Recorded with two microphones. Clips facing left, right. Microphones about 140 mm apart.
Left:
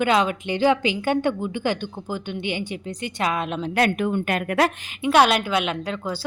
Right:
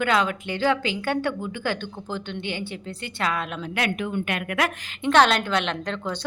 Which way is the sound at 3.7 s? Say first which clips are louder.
Left 5 dB; 40° left (ahead or behind).